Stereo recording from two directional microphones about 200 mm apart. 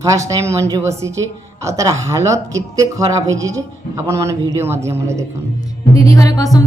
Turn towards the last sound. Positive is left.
turn(degrees=15)  # may be behind; listen again after turning